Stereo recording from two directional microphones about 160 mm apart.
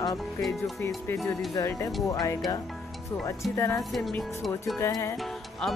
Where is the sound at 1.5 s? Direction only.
20° left (ahead or behind).